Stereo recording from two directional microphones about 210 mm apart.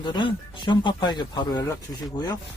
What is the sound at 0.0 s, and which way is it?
Speech, 20° left (ahead or behind).